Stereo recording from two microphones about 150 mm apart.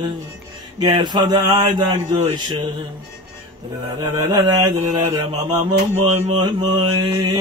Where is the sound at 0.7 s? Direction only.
30° right (ahead or behind).